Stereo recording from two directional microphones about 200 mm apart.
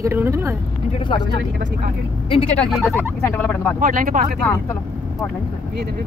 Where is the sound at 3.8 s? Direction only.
40° right (ahead or behind).